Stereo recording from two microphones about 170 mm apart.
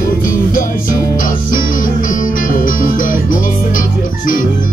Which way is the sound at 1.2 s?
50° left (ahead or behind).